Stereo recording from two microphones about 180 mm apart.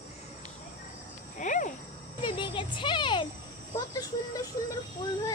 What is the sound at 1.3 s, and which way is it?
Speech, 45° left (ahead or behind).